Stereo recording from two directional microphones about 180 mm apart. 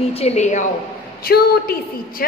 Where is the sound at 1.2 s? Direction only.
55° left (ahead or behind).